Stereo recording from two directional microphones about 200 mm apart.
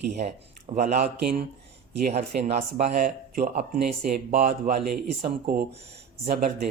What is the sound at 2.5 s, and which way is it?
Speech, 40° right (ahead or behind).